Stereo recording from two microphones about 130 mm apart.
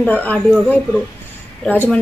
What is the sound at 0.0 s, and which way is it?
Speech, 10° left (ahead or behind).